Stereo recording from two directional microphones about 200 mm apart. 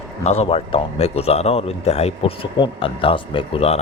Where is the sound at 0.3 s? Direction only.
30° left (ahead or behind).